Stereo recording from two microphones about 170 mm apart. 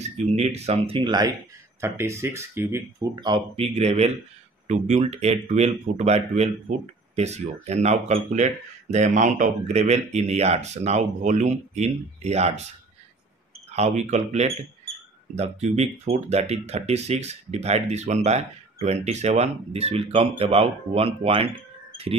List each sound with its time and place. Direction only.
0.0 s speech: 40° right (ahead or behind)
1.8 s speech: 15° right (ahead or behind); by 12.6 s 40° right (ahead or behind)
13.7 s speech: 40° right (ahead or behind)